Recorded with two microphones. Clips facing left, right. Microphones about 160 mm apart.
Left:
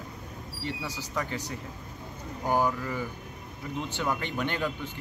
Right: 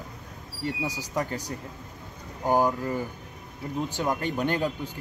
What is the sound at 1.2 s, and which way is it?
Speech, 40° right (ahead or behind).